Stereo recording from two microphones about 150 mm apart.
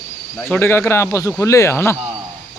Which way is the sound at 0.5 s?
15° left (ahead or behind).